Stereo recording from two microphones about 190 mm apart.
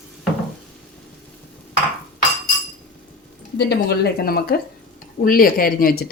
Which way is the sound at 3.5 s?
60° left (ahead or behind).